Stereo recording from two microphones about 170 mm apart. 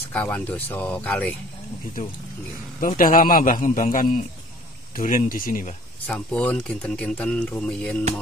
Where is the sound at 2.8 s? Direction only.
50° left (ahead or behind).